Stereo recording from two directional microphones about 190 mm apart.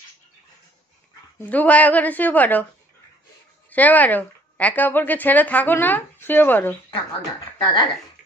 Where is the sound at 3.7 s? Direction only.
10° left (ahead or behind).